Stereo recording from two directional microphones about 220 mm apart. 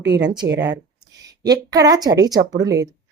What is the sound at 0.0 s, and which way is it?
Speech, 55° right (ahead or behind).